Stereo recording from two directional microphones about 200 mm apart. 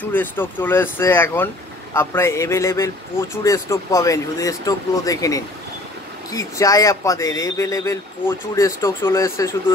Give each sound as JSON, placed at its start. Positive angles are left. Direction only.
{"t": 0.0, "sound": "a man's voice", "side_deg": 10}